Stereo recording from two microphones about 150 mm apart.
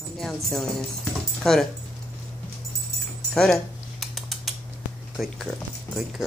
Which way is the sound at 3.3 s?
5° left (ahead or behind).